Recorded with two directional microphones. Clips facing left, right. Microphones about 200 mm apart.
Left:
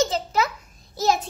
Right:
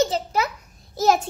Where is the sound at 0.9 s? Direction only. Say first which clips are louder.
Right 3 dB; 50° right (ahead or behind).